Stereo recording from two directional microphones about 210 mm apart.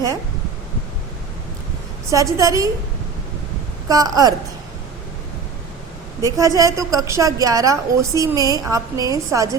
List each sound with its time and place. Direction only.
2.0 s a woman's voice: 15° right (ahead or behind)
3.8 s a woman's voice: 15° right (ahead or behind)
6.2 s a woman's voice: 15° right (ahead or behind)